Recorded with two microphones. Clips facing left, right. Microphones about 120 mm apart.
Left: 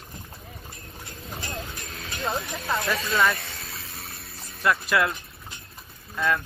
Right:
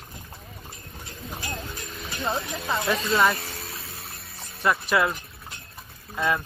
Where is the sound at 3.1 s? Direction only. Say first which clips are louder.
Right 2 dB; 25° right (ahead or behind).